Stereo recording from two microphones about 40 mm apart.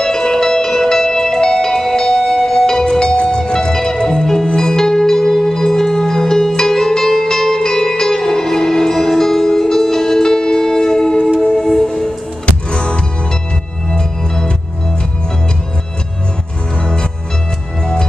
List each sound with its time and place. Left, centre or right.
0.0 s music: centre
12.7 s music: left
13.8 s music: centre
16.7 s music: left